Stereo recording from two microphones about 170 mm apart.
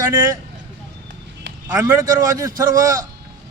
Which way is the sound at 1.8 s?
20° right (ahead or behind).